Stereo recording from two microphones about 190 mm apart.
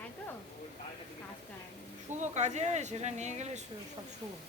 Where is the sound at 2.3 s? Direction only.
35° right (ahead or behind).